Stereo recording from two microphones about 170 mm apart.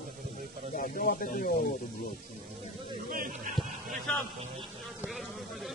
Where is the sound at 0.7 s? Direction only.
55° left (ahead or behind).